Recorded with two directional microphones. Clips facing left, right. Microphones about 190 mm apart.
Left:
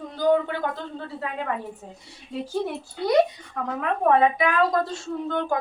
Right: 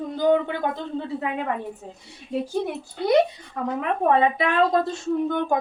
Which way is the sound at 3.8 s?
25° right (ahead or behind).